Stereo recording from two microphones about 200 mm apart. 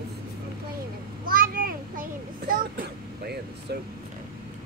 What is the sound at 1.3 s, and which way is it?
Child singing, 45° right (ahead or behind).